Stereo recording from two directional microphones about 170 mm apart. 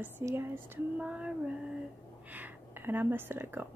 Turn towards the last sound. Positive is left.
turn(degrees=-10)  # may be behind; listen again after turning